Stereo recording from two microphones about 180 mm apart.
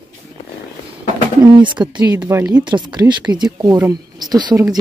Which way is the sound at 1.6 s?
25° right (ahead or behind).